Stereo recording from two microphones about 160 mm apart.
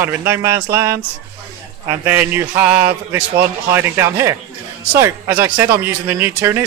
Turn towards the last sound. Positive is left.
turn(degrees=-15)  # may be behind; listen again after turning